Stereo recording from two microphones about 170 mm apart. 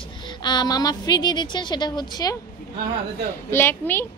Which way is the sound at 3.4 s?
15° left (ahead or behind).